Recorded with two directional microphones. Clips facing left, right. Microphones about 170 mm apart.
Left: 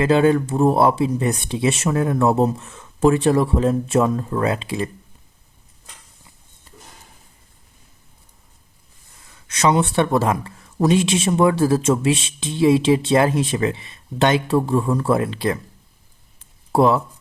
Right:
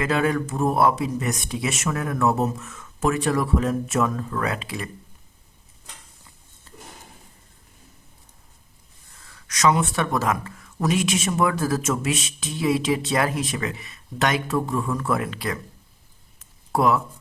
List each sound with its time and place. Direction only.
0.0 s speech: 30° left (ahead or behind)
9.3 s speech: 25° left (ahead or behind)
16.4 s a sound: 30° left (ahead or behind)